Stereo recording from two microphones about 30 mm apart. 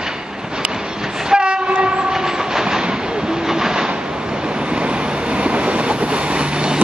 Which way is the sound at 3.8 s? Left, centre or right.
Right.